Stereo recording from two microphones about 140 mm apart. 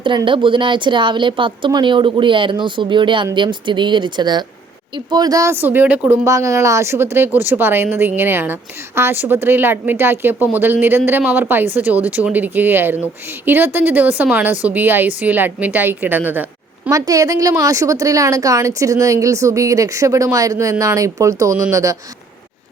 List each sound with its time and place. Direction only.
0.0 s speech: 35° right (ahead or behind); by 6.1 s 10° right (ahead or behind)
6.2 s speech: 20° right (ahead or behind)
16.9 s a woman's voice: 25° right (ahead or behind)